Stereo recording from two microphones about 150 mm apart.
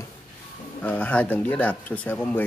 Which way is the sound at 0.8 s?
10° left (ahead or behind).